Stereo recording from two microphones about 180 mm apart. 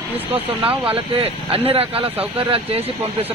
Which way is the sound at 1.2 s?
35° right (ahead or behind).